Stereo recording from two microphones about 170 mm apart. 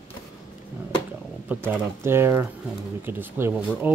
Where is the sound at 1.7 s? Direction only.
15° right (ahead or behind).